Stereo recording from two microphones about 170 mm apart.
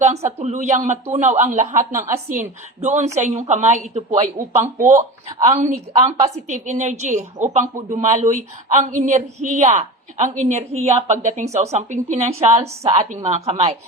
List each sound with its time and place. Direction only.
0.3 s a woman's voice: 45° right (ahead or behind)
1.8 s speech: 15° right (ahead or behind)
2.3 s a woman's voice: 45° right (ahead or behind)
4.5 s speech: 15° right (ahead or behind)
6.5 s a woman's voice: 45° right (ahead or behind)